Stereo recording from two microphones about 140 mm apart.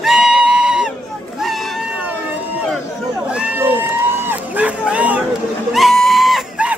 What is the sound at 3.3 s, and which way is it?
Crowd, 10° right (ahead or behind).